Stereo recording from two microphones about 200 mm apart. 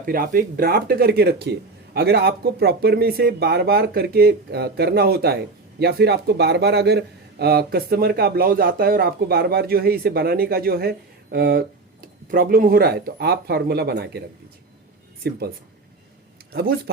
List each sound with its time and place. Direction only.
0.0 s a man's voice: 45° right (ahead or behind)
15.2 s a man's voice: 50° right (ahead or behind)
16.5 s speech: 50° right (ahead or behind)